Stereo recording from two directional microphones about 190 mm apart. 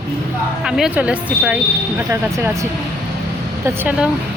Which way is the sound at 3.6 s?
10° right (ahead or behind).